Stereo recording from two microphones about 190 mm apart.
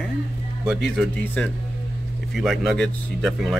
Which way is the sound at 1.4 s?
5° left (ahead or behind).